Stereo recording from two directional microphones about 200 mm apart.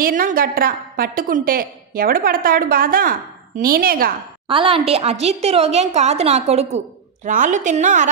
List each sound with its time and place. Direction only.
0.0 s a woman's voice: 45° right (ahead or behind)
4.5 s a woman's voice: 25° right (ahead or behind)